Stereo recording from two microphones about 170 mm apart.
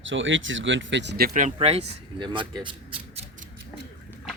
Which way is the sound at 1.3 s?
45° right (ahead or behind).